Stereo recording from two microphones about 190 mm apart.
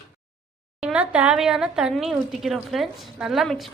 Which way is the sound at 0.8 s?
5° right (ahead or behind).